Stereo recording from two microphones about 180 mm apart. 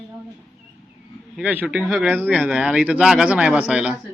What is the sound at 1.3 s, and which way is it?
Speech, 10° right (ahead or behind).